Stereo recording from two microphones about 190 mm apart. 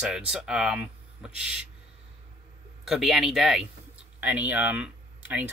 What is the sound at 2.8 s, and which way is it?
Speech, centre (ahead or behind).